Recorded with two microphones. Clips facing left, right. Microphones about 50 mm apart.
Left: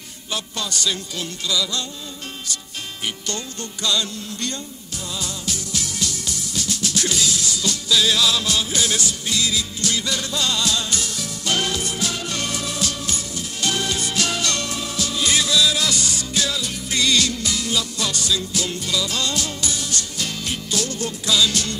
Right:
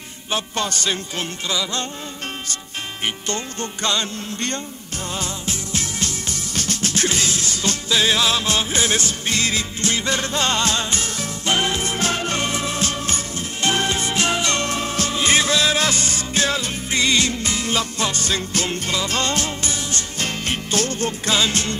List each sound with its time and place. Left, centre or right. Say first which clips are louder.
0.3 s music: right 4 dB; right